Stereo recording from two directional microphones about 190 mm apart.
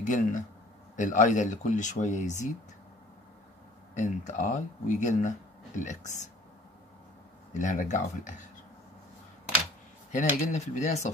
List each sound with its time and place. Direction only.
0.0 s speech: 40° left (ahead or behind)
3.9 s speech: 40° left (ahead or behind)
7.5 s speech: 40° left (ahead or behind)
10.1 s speech: 40° left (ahead or behind)